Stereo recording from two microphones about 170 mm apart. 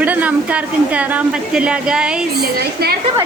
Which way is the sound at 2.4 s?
65° right (ahead or behind).